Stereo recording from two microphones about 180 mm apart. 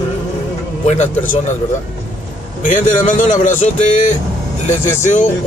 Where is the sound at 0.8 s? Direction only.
40° left (ahead or behind).